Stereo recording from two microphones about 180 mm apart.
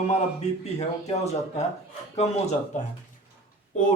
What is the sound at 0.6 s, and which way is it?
Speech, 35° left (ahead or behind).